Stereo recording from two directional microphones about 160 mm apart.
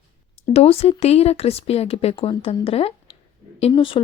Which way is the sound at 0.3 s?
40° left (ahead or behind).